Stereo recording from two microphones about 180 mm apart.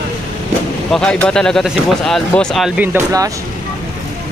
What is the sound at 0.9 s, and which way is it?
Speech, 5° left (ahead or behind).